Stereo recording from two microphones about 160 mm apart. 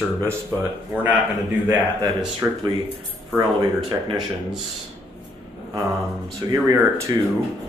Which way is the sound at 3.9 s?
20° right (ahead or behind).